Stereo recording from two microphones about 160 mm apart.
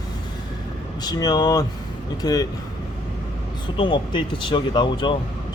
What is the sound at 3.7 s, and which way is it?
Speech, 30° left (ahead or behind).